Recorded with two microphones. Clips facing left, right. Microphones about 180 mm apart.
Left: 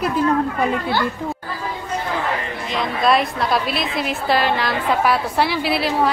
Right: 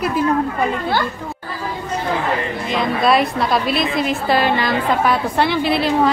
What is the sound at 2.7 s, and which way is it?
A woman's voice, centre (ahead or behind).